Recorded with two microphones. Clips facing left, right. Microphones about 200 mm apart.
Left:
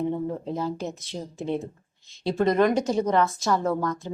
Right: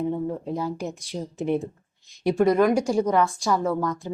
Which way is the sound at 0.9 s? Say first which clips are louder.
Right 3 dB; 15° right (ahead or behind).